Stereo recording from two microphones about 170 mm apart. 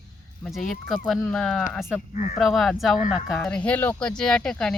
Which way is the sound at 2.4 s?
Centre (ahead or behind).